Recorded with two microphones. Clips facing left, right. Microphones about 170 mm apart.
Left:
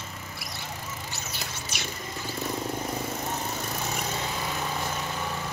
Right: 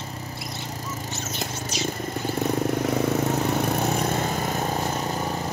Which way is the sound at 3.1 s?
65° right (ahead or behind).